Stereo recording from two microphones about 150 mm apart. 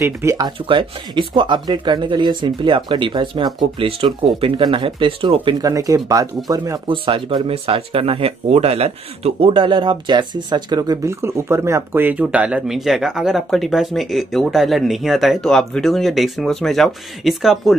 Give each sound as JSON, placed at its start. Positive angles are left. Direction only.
{"t": 0.0, "sound": "speech", "side_deg": -20}
{"t": 0.6, "sound": "speech", "side_deg": -35}
{"t": 7.1, "sound": "speech", "side_deg": -35}